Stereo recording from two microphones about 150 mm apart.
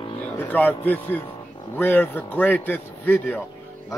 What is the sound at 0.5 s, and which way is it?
A man's voice, 10° left (ahead or behind).